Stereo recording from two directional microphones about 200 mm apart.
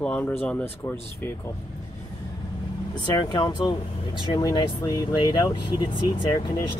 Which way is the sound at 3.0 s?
20° left (ahead or behind).